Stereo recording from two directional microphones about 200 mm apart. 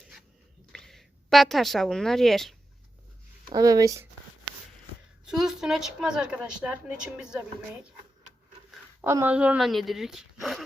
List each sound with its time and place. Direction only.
0.7 s a woman's voice: centre (ahead or behind)
3.5 s speech: 15° right (ahead or behind)
5.3 s speech: centre (ahead or behind)
9.0 s speech: 10° right (ahead or behind)